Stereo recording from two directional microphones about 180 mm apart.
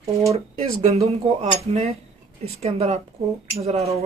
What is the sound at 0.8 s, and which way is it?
Speech, 35° right (ahead or behind).